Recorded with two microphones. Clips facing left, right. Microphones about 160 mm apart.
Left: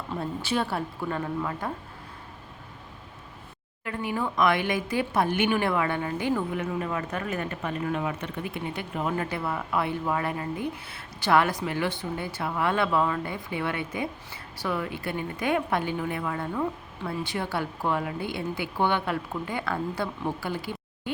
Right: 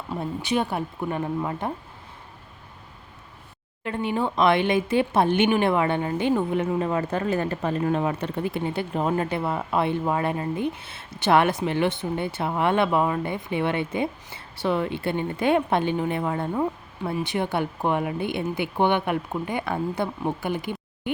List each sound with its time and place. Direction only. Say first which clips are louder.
0.1 s speech: right 3 dB; 15° right (ahead or behind)
3.8 s speech: right 4 dB; 25° right (ahead or behind)